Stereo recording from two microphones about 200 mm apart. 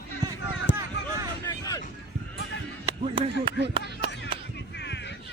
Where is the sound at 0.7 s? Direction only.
65° left (ahead or behind).